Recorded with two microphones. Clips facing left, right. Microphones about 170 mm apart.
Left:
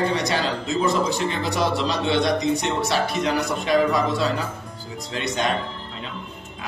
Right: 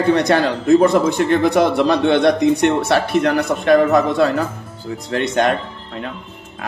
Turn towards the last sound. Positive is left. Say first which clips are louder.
# right 8 dB
turn(degrees=-55)  # may be behind; listen again after turning